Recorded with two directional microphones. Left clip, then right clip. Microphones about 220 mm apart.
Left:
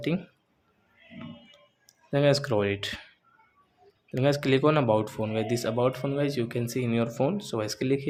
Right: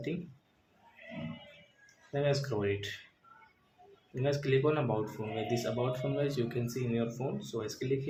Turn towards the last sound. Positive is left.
turn(degrees=45)  # may be behind; listen again after turning